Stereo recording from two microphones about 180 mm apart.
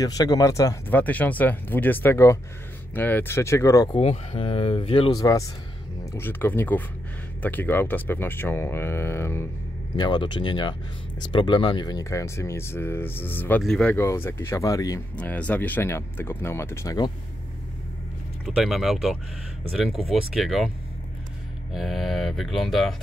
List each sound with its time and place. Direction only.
0.0 s speech: 20° left (ahead or behind)
3.9 s speech: 35° left (ahead or behind)
5.2 s speech: 20° left (ahead or behind)
9.9 s speech: 25° left (ahead or behind)
15.1 s speech: 10° left (ahead or behind)
18.4 s cattle: centre (ahead or behind)
21.7 s cattle: centre (ahead or behind)